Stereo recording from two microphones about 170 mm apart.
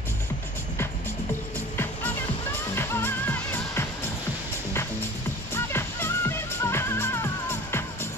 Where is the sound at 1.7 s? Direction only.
10° left (ahead or behind).